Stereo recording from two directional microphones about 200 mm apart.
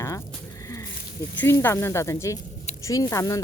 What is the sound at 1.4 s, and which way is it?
Speech, 10° left (ahead or behind).